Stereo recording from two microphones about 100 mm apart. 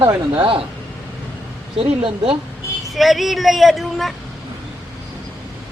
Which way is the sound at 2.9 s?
Centre (ahead or behind).